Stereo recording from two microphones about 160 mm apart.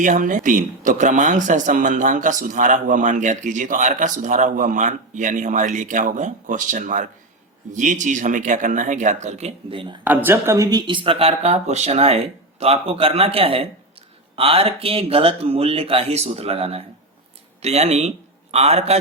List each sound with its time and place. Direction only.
0.0 s speech: 55° right (ahead or behind); by 10.0 s 30° right (ahead or behind)
10.0 s speech: 10° right (ahead or behind); by 18.9 s 40° right (ahead or behind)